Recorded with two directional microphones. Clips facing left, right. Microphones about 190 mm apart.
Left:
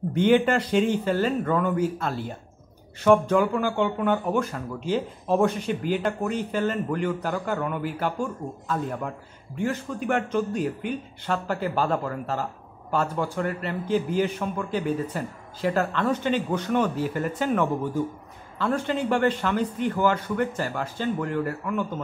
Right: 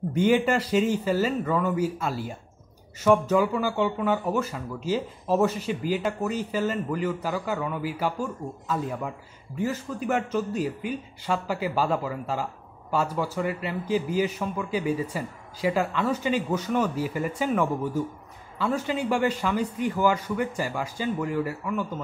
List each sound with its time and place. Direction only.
0.1 s a man's voice: 5° right (ahead or behind)